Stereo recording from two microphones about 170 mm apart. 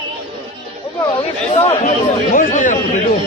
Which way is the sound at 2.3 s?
50° left (ahead or behind).